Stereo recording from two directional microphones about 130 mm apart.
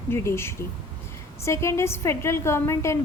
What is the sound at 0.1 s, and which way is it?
A woman's voice, 20° left (ahead or behind).